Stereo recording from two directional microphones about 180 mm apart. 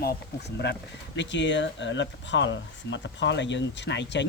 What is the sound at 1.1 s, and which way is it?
Speech, 80° left.